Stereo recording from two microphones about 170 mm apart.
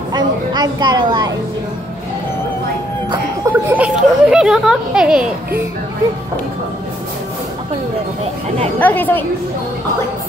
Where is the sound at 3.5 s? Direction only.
10° right (ahead or behind).